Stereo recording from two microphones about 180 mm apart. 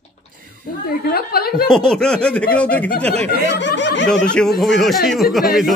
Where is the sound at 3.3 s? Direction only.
70° left (ahead or behind).